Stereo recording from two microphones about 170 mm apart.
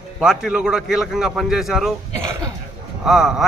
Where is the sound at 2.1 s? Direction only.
20° right (ahead or behind).